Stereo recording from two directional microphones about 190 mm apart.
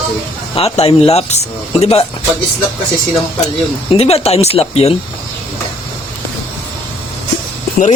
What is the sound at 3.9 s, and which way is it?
Speech, 35° left (ahead or behind).